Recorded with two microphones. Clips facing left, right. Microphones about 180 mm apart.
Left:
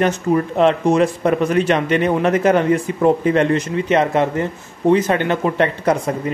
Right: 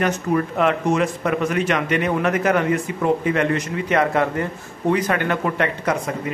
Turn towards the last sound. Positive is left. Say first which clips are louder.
# left 5 dB
turn(degrees=30)  # may be behind; listen again after turning